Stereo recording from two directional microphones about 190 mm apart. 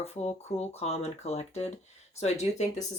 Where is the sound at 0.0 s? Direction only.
35° left (ahead or behind).